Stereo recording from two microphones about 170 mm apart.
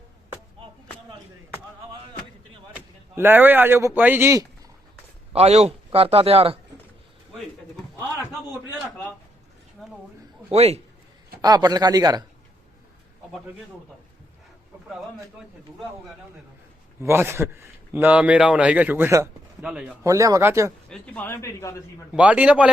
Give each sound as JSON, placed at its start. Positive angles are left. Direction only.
{"t": 2.7, "sound": "speech", "side_deg": -10}
{"t": 5.3, "sound": "a man's voice", "side_deg": -40}
{"t": 7.9, "sound": "a sound", "side_deg": 10}
{"t": 9.8, "sound": "a sound", "side_deg": 0}
{"t": 10.5, "sound": "a man's voice", "side_deg": -40}
{"t": 11.4, "sound": "speech", "side_deg": -25}
{"t": 17.0, "sound": "a man's voice", "side_deg": -15}
{"t": 20.1, "sound": "a man's voice", "side_deg": -20}
{"t": 20.9, "sound": "speech", "side_deg": 10}
{"t": 22.1, "sound": "a man's voice", "side_deg": -10}